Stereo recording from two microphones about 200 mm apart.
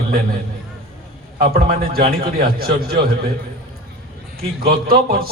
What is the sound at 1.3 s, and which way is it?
A man's voice, 50° right (ahead or behind).